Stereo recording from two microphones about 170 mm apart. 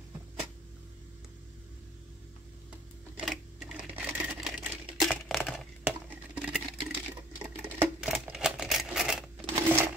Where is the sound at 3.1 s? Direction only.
5° right (ahead or behind).